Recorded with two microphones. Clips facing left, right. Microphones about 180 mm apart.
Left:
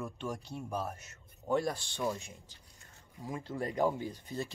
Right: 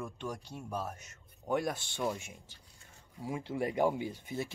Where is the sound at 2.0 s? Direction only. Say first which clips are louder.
Even; 5° right (ahead or behind).